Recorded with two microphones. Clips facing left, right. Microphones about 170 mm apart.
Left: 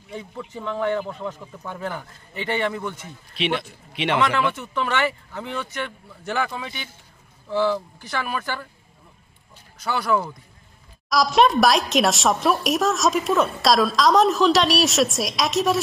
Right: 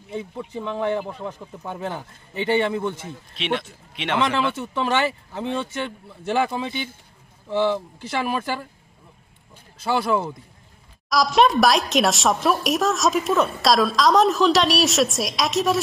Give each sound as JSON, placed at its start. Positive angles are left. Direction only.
{"t": 0.1, "sound": "speech", "side_deg": -25}
{"t": 3.3, "sound": "speech", "side_deg": 5}
{"t": 4.2, "sound": "speech", "side_deg": -25}
{"t": 9.8, "sound": "speech", "side_deg": -25}
{"t": 11.1, "sound": "speech", "side_deg": 0}